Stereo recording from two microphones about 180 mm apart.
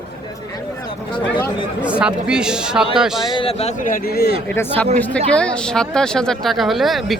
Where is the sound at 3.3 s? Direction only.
35° left (ahead or behind); by 4.4 s 60° left (ahead or behind).